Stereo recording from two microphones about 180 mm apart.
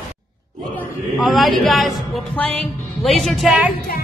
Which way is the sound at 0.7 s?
Centre (ahead or behind).